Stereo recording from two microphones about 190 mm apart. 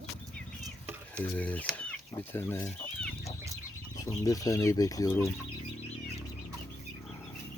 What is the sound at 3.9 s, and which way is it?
Speech, 20° left (ahead or behind).